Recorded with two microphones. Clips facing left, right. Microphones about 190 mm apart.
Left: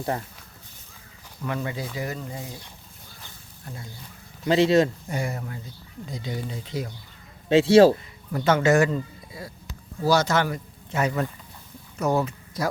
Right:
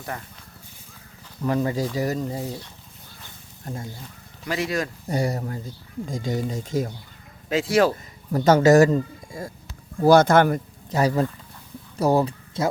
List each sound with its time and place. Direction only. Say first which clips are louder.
0.1 s speech: left 5 dB; 25° left (ahead or behind)
1.5 s speech: right 7 dB; 35° right (ahead or behind)
3.6 s speech: right 7 dB; 45° right (ahead or behind)
4.4 s speech: left 8 dB; 25° left (ahead or behind)
5.0 s speech: right 5 dB; 35° right (ahead or behind)
7.5 s speech: left 5 dB; 30° left (ahead or behind)
8.3 s speech: right 5 dB; 40° right (ahead or behind)
10.9 s speech: right 4 dB; 35° right (ahead or behind)